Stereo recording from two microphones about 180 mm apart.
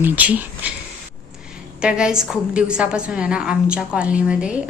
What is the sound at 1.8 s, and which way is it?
A woman's voice, 5° right (ahead or behind).